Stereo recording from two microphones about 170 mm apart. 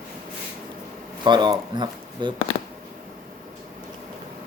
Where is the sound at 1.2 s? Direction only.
25° right (ahead or behind).